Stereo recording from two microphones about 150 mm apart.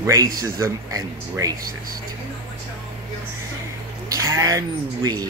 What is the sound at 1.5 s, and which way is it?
Speech, 70° right (ahead or behind).